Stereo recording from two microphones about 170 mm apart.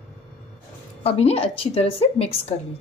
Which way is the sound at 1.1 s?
35° left (ahead or behind).